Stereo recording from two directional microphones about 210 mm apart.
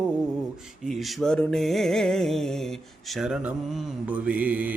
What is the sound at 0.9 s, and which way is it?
Speech, centre (ahead or behind).